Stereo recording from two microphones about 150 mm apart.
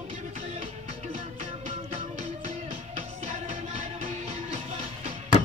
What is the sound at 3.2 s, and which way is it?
Music, 50° right (ahead or behind).